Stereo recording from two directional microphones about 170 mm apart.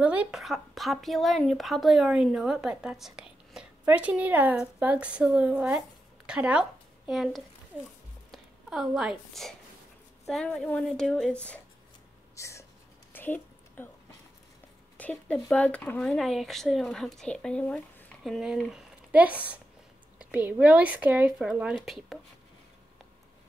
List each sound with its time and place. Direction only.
0.0 s a woman's voice: 10° right (ahead or behind)
12.4 s speech: 15° left (ahead or behind)
13.1 s a sound: 10° left (ahead or behind)
15.0 s speech: 10° left (ahead or behind)